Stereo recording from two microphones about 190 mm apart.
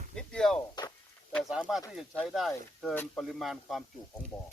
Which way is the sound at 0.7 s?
20° left (ahead or behind).